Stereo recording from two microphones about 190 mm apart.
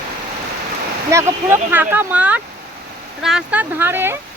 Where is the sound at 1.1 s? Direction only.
15° right (ahead or behind).